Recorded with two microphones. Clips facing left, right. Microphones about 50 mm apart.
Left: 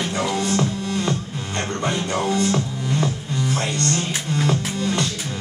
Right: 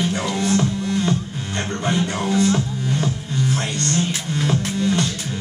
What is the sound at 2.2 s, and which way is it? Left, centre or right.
Music, left.